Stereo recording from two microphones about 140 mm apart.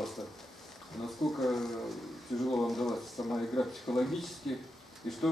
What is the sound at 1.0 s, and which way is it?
Speech, centre (ahead or behind).